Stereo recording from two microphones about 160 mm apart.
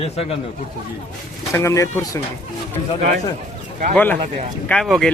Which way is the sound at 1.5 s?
20° left (ahead or behind).